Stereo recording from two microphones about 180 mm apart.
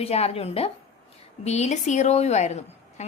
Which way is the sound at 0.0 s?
35° left (ahead or behind).